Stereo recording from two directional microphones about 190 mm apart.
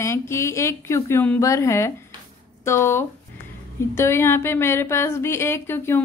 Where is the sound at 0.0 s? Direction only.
15° left (ahead or behind).